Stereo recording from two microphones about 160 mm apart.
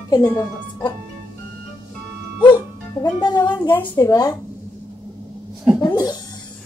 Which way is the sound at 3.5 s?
10° left (ahead or behind).